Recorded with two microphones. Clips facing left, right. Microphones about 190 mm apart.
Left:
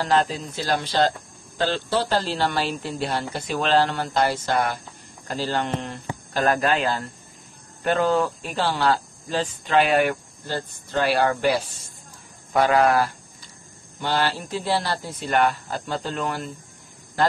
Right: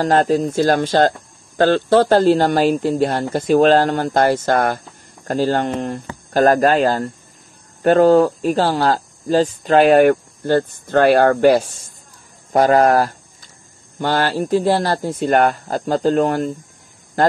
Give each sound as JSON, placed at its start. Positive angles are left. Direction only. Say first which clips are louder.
{"t": 0.0, "sound": "speech", "louder": "right 7 dB", "side_deg": -50}